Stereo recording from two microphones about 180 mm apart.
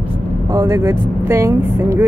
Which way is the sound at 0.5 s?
15° right (ahead or behind).